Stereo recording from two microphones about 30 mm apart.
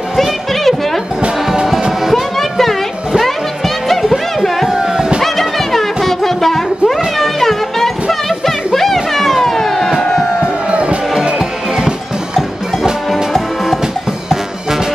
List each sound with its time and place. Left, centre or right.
0.1 s music: centre
2.0 s music: centre
2.3 s music: centre
5.2 s music: centre
10.7 s music: right
11.3 s music: centre
13.1 s music: centre